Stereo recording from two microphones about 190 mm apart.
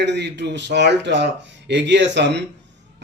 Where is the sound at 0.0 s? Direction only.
65° right (ahead or behind).